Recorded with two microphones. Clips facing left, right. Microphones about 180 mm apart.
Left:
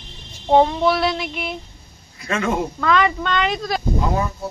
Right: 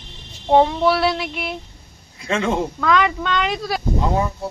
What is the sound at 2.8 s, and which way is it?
Child singing, centre (ahead or behind).